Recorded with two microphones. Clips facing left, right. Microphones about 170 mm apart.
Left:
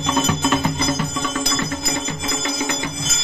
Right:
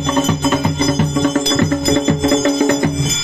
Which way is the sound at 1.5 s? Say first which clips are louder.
Right 10 dB; 55° right (ahead or behind).